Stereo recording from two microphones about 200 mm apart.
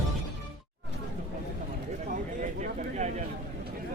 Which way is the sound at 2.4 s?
35° right (ahead or behind).